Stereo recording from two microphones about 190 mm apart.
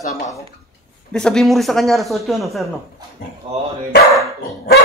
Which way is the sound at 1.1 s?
5° left (ahead or behind).